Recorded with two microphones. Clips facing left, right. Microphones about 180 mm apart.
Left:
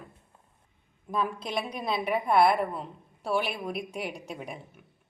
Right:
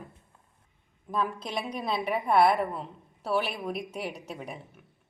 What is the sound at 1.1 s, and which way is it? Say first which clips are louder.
A woman's voice: left 1 dB; 10° left (ahead or behind).